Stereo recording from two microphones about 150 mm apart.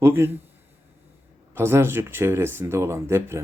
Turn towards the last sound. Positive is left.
turn(degrees=-15)  # may be behind; listen again after turning